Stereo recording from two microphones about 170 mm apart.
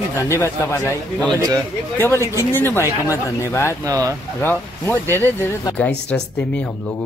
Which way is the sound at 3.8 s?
20° right (ahead or behind).